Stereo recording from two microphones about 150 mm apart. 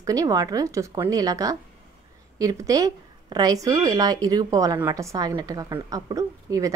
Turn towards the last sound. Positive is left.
turn(degrees=-25)  # may be behind; listen again after turning